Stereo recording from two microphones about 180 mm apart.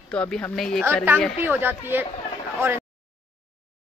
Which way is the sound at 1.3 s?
10° right (ahead or behind).